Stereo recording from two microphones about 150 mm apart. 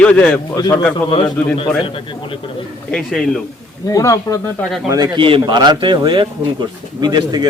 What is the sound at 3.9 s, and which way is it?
Speech, 20° left (ahead or behind).